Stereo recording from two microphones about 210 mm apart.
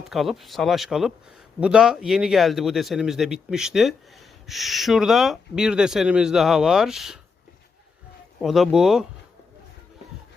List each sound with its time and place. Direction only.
0.0 s a man's voice: centre (ahead or behind)
8.4 s a man's voice: centre (ahead or behind)